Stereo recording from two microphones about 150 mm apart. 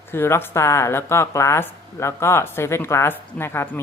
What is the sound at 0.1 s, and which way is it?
Speech, 15° left (ahead or behind).